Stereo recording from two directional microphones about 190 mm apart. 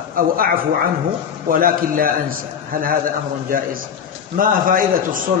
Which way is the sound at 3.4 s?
50° right (ahead or behind).